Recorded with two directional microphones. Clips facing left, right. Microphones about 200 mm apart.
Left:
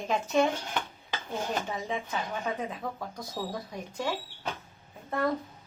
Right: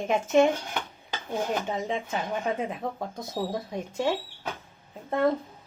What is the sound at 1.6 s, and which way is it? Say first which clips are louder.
Speech: right 4 dB; 20° right (ahead or behind).